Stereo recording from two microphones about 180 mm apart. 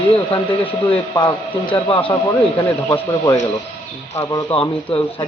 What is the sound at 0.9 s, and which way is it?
A man's voice, 25° left (ahead or behind).